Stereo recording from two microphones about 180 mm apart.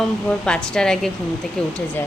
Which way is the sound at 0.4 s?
5° left (ahead or behind).